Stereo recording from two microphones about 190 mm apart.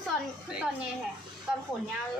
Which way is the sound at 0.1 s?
5° right (ahead or behind).